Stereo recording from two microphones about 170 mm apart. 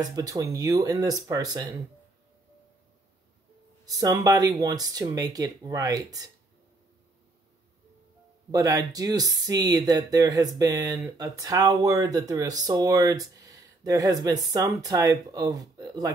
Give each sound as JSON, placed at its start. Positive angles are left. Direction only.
{"t": 0.0, "sound": "speech", "side_deg": -20}
{"t": 3.8, "sound": "speech", "side_deg": -20}
{"t": 8.5, "sound": "speech", "side_deg": -20}